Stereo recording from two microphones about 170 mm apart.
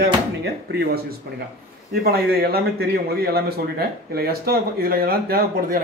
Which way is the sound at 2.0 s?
65° right (ahead or behind).